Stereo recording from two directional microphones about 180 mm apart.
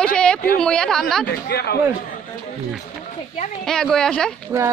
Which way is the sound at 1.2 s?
65° left (ahead or behind).